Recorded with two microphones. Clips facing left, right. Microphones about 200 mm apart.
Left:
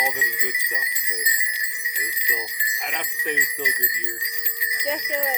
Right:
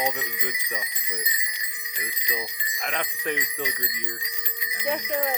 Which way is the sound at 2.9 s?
15° left (ahead or behind).